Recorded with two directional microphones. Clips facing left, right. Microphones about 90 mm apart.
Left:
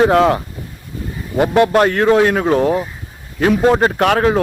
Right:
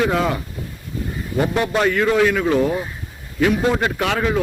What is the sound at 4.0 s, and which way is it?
Speech, 55° left (ahead or behind).